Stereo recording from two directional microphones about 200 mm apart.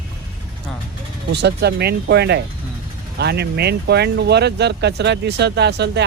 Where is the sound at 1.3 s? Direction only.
55° right (ahead or behind).